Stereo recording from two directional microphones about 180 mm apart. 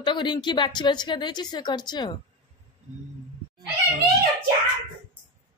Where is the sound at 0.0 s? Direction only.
25° left (ahead or behind).